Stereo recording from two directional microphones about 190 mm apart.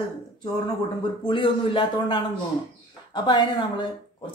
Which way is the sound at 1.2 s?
25° left (ahead or behind).